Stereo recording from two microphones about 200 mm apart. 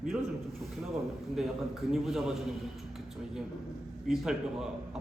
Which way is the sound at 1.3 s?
Centre (ahead or behind).